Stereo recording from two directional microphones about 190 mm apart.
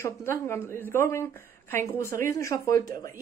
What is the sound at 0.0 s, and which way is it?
A woman's voice, 15° left (ahead or behind).